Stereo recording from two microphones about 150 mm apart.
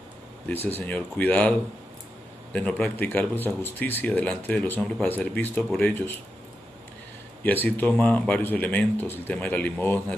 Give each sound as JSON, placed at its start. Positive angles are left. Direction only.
{"t": 0.8, "sound": "speech", "side_deg": 10}
{"t": 2.5, "sound": "speech", "side_deg": 10}
{"t": 7.4, "sound": "speech", "side_deg": 10}